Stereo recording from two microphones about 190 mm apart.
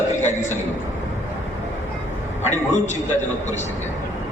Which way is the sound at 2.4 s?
35° left (ahead or behind).